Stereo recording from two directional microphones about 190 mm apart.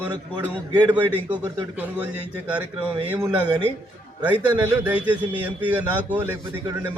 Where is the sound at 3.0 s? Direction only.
10° right (ahead or behind).